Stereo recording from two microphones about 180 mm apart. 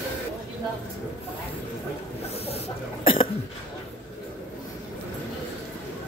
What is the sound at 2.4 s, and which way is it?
Cough, 35° left (ahead or behind).